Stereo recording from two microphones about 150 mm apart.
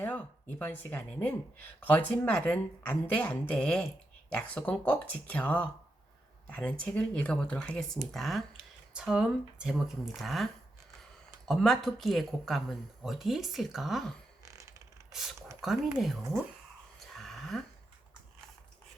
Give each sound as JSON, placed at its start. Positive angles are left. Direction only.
{"t": 0.6, "sound": "a woman's voice", "side_deg": 15}
{"t": 14.4, "sound": "mechanisms", "side_deg": -20}
{"t": 15.1, "sound": "speech", "side_deg": -5}
{"t": 17.2, "sound": "a sound", "side_deg": 0}